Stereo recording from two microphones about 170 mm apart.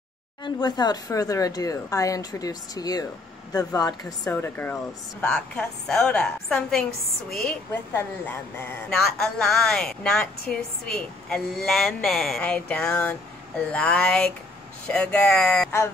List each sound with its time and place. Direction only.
0.4 s a woman's voice: 25° left (ahead or behind); by 15.7 s 5° left (ahead or behind)